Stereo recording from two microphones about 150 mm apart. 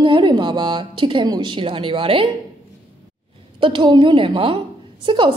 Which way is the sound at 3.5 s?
35° right (ahead or behind).